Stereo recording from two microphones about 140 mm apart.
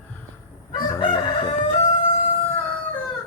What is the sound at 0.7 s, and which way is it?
Crowing, 30° left (ahead or behind).